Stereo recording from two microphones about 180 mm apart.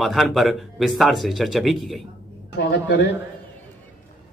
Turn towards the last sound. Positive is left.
turn(degrees=75)  # may be behind; listen again after turning